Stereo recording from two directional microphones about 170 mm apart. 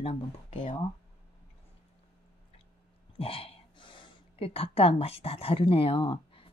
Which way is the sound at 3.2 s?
35° left (ahead or behind).